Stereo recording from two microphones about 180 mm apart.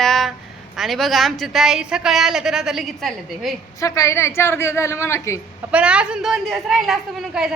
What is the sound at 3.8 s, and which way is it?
A woman's voice, 20° left (ahead or behind).